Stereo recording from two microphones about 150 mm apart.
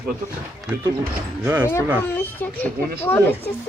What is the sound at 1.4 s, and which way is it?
Speech, 15° right (ahead or behind).